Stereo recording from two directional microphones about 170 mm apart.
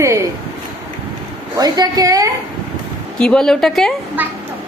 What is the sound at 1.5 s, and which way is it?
Speech, 25° right (ahead or behind).